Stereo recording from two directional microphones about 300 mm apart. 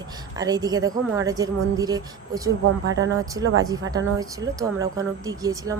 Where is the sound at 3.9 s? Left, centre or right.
Centre.